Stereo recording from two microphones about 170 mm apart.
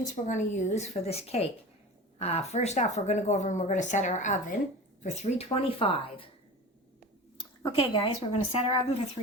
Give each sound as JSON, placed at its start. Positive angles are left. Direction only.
{"t": 0.0, "sound": "a woman's voice", "side_deg": 45}
{"t": 7.6, "sound": "a woman's voice", "side_deg": 35}